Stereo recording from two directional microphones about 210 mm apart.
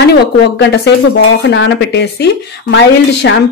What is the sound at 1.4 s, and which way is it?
Speech, 60° left (ahead or behind).